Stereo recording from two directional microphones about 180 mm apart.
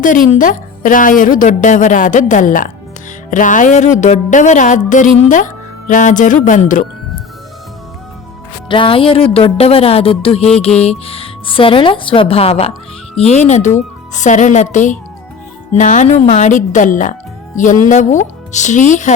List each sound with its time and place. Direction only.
0.0 s a woman's voice: 45° left (ahead or behind)
8.7 s a woman's voice: 30° left (ahead or behind)